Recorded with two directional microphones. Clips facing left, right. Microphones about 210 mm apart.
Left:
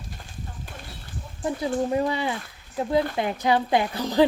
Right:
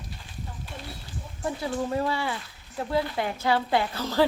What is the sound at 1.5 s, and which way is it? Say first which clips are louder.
Speech: left 4 dB; 20° left (ahead or behind).